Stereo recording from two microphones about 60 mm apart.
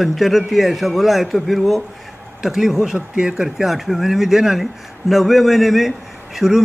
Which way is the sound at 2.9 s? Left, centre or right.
Right.